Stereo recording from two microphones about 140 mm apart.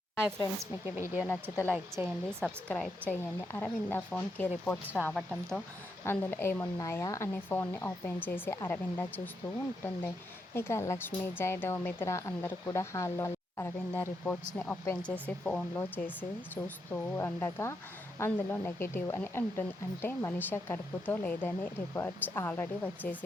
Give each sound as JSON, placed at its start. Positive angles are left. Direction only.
{"t": 0.3, "sound": "a woman's voice", "side_deg": -20}
{"t": 1.3, "sound": "speech", "side_deg": 15}
{"t": 2.0, "sound": "a woman's voice", "side_deg": -15}
{"t": 2.4, "sound": "speech", "side_deg": 10}
{"t": 6.1, "sound": "speech", "side_deg": 15}